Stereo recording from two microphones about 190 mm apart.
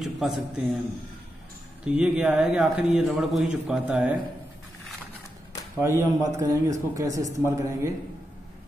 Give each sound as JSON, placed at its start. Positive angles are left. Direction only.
{"t": 0.0, "sound": "a man's voice", "side_deg": 0}
{"t": 1.9, "sound": "a man's voice", "side_deg": -5}
{"t": 5.8, "sound": "speech", "side_deg": -15}